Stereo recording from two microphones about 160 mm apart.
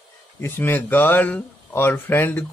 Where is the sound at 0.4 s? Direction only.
10° left (ahead or behind).